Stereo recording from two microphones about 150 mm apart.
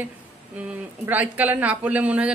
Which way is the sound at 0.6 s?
10° right (ahead or behind).